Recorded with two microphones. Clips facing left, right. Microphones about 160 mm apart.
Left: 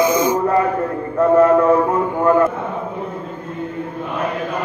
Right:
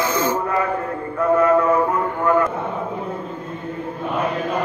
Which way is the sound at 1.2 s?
35° left (ahead or behind).